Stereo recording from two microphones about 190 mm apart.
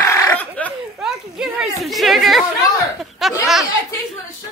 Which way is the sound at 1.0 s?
Centre (ahead or behind).